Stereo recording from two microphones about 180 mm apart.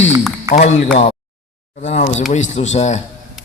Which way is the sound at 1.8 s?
40° left (ahead or behind).